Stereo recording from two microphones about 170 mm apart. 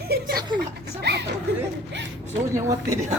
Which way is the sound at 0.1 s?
70° right (ahead or behind).